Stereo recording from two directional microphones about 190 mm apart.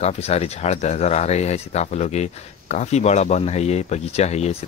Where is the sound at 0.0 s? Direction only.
35° left (ahead or behind).